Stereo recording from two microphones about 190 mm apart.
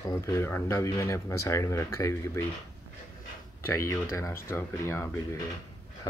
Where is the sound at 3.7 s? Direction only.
15° left (ahead or behind).